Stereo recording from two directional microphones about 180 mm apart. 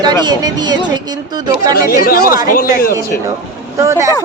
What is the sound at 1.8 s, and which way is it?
Speech, 55° left (ahead or behind).